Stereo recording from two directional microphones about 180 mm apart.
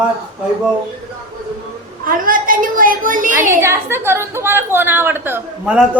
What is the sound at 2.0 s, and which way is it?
Speech, 50° right (ahead or behind).